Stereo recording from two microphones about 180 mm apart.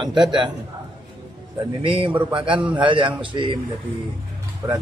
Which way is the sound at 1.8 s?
30° right (ahead or behind).